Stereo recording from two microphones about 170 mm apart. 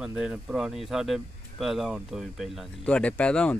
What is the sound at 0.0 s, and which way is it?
Speech, 5° right (ahead or behind).